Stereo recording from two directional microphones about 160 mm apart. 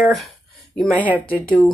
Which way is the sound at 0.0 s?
Centre (ahead or behind).